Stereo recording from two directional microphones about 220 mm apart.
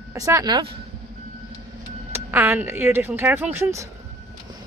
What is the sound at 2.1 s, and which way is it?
Speech, 10° right (ahead or behind).